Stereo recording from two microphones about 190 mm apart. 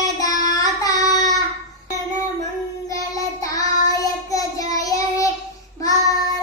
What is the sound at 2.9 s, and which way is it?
Child singing, 20° left (ahead or behind).